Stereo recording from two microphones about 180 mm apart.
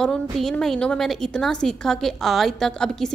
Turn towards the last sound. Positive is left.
turn(degrees=0)  # may be behind; listen again after turning